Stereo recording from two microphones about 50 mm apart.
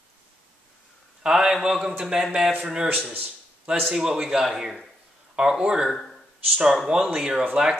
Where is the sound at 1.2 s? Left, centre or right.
Centre.